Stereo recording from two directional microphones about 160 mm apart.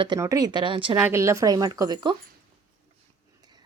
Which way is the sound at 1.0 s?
15° right (ahead or behind).